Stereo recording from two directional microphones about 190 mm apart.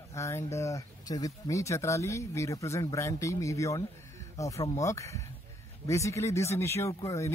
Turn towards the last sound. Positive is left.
turn(degrees=15)  # may be behind; listen again after turning